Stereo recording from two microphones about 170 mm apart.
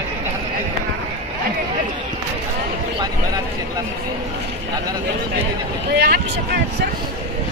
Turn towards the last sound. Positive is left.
turn(degrees=-65)  # may be behind; listen again after turning